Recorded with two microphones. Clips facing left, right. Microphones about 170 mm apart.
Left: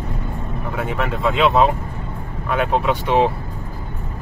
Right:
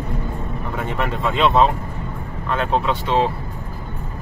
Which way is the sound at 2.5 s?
10° left (ahead or behind).